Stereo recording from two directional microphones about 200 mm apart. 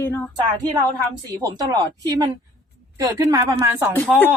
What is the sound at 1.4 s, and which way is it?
Speech, 20° right (ahead or behind).